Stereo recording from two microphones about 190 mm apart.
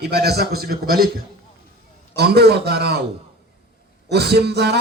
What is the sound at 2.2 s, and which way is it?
Speech, 60° right (ahead or behind).